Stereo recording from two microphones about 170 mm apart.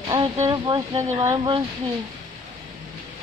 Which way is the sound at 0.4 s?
20° right (ahead or behind).